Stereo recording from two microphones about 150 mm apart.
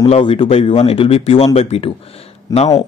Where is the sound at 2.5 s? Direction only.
25° left (ahead or behind).